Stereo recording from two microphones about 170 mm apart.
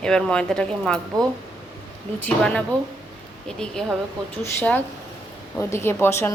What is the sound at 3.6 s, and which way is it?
Cutlery, 5° left (ahead or behind).